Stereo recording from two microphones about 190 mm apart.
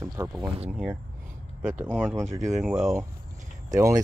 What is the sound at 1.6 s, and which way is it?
Speech, 10° right (ahead or behind).